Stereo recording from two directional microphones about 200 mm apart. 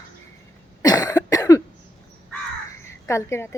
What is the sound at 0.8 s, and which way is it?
Cough, 20° left (ahead or behind).